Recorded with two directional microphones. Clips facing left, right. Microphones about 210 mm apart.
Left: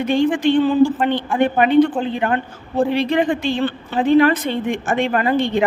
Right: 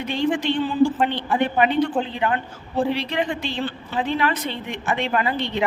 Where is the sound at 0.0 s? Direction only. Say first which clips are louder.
Left 6 dB; 50° left (ahead or behind).